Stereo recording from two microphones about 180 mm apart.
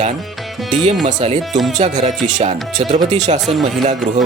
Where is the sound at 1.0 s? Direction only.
35° right (ahead or behind).